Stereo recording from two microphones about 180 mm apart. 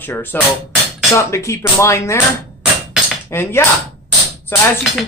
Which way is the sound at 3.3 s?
15° left (ahead or behind).